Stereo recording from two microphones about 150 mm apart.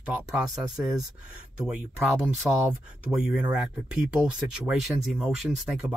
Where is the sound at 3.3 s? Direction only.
5° right (ahead or behind).